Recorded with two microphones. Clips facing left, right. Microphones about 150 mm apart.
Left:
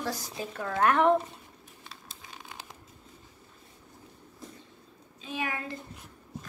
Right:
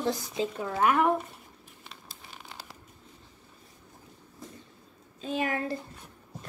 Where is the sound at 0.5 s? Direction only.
10° right (ahead or behind).